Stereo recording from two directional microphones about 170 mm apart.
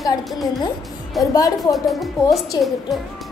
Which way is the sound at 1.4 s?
20° left (ahead or behind).